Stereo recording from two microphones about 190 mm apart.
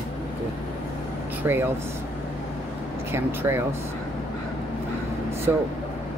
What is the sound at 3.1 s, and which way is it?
Speech, 10° right (ahead or behind).